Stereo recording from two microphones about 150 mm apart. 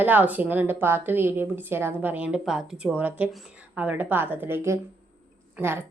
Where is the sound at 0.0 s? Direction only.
10° right (ahead or behind).